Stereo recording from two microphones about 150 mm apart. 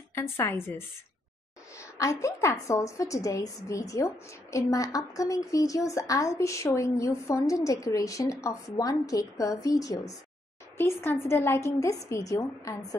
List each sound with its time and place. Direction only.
0.1 s a woman's voice: 15° left (ahead or behind)
2.0 s a woman's voice: 20° left (ahead or behind)